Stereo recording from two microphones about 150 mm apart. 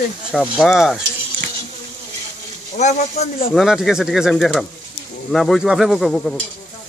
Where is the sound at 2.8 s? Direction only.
50° left (ahead or behind).